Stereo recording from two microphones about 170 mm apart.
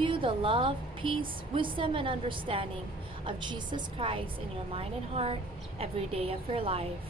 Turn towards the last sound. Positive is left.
turn(degrees=-35)  # may be behind; listen again after turning